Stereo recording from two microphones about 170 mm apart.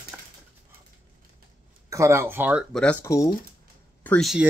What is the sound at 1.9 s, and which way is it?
Speech, 15° right (ahead or behind).